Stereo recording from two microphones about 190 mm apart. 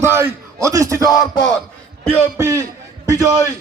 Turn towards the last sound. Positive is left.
turn(degrees=-15)  # may be behind; listen again after turning